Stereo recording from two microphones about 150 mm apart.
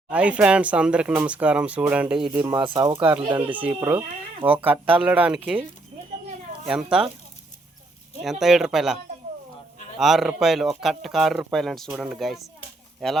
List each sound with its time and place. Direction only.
0.1 s speech: 10° right (ahead or behind)
2.3 s speech: 15° right (ahead or behind)
2.6 s speech: 30° right (ahead or behind)
3.3 s speech: 10° right (ahead or behind)
6.7 s speech: 5° right (ahead or behind)
8.2 s speech: centre (ahead or behind)
10.0 s speech: centre (ahead or behind)